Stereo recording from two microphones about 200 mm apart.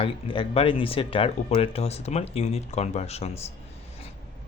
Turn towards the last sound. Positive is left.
turn(degrees=30)  # may be behind; listen again after turning